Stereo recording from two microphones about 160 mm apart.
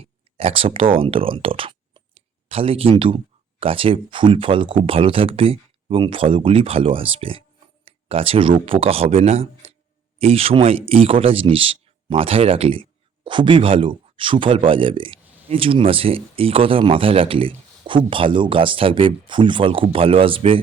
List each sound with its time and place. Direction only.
0.3 s speech: 35° right (ahead or behind)
7.9 s a sound: 35° right (ahead or behind)
8.6 s speech: 35° right (ahead or behind)